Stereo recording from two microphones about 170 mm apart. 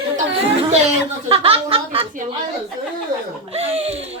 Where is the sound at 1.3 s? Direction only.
35° right (ahead or behind).